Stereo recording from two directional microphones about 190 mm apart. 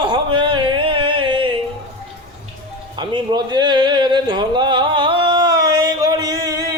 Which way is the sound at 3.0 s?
25° right (ahead or behind).